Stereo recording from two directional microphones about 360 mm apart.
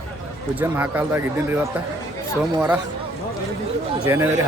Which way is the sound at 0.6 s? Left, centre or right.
Centre.